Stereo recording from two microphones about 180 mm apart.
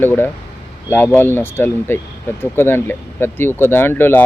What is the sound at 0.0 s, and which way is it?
Speech, 10° left (ahead or behind).